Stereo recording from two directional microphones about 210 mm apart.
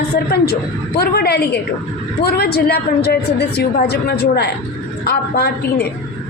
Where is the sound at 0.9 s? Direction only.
50° left (ahead or behind).